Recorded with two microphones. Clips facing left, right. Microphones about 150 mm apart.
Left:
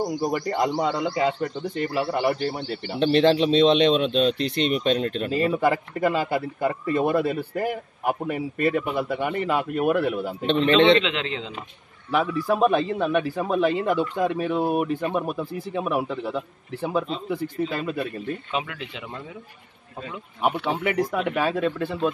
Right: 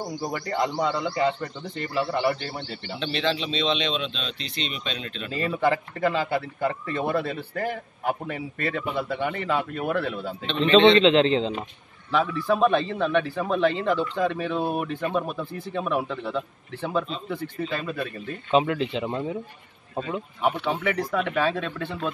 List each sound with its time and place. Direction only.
0.0 s a man's voice: 15° left (ahead or behind)
3.0 s speech: 55° left (ahead or behind)
5.3 s a man's voice: 10° left (ahead or behind)
10.4 s speech: 55° left (ahead or behind)
11.0 s speech: 30° right (ahead or behind)
12.1 s a man's voice: 10° left (ahead or behind)
18.5 s speech: 30° right (ahead or behind)
20.4 s a man's voice: 10° left (ahead or behind)